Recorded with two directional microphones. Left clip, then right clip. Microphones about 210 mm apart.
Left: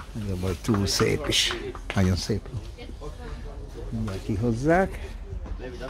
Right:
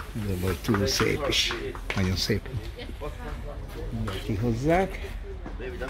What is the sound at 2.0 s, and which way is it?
Speech, 20° left (ahead or behind).